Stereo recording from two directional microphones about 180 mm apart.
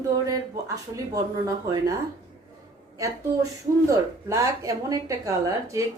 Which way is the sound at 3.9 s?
20° right (ahead or behind).